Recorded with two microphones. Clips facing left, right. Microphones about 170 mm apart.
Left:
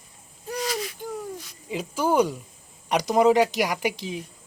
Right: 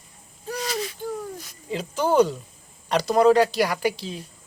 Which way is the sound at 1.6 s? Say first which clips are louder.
Right 1 dB; 5° left (ahead or behind).